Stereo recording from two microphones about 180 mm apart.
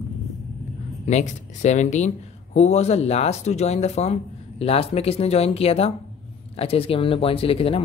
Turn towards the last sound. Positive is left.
turn(degrees=30)  # may be behind; listen again after turning